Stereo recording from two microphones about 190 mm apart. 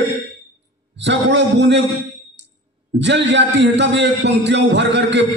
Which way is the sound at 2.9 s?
65° right (ahead or behind).